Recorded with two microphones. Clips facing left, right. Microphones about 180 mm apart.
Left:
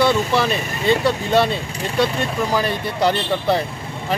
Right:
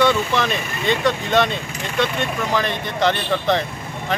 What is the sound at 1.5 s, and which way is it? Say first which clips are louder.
Speech: left 3 dB; 35° left (ahead or behind).